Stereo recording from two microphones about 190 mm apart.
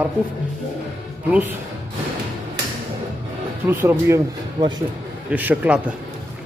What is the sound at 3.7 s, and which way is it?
Speech, 10° right (ahead or behind).